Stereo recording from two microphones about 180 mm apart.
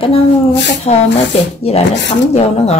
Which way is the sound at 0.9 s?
30° left (ahead or behind).